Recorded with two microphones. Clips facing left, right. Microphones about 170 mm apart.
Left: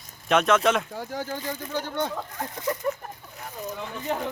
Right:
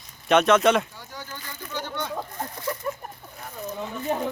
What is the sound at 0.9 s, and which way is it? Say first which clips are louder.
Speech: left 9 dB; 50° left (ahead or behind).